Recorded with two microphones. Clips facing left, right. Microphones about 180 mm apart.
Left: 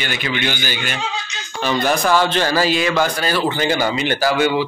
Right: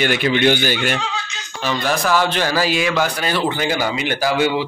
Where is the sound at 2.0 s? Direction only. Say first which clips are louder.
Left 1 dB; 10° right (ahead or behind).